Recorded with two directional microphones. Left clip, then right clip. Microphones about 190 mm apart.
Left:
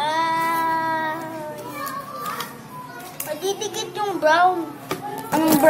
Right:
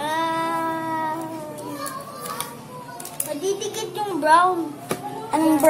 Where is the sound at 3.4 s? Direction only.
15° right (ahead or behind).